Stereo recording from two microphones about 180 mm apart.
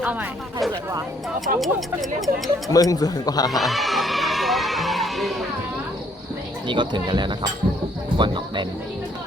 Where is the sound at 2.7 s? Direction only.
20° left (ahead or behind).